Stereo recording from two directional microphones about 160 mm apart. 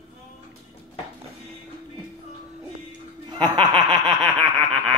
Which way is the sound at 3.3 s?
30° right (ahead or behind).